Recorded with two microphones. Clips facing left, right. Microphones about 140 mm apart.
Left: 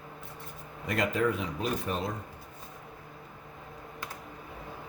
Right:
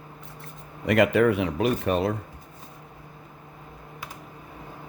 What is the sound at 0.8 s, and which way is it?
Speech, 70° right (ahead or behind).